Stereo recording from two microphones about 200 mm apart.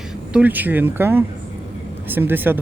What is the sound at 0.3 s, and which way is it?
Speech, 10° right (ahead or behind).